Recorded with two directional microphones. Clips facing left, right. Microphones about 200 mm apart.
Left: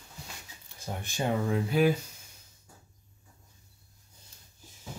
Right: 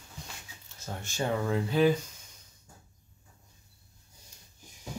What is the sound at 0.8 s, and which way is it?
Speech, 15° left (ahead or behind).